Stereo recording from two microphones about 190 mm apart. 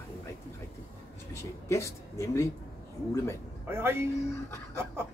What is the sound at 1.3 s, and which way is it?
Speech, 15° left (ahead or behind).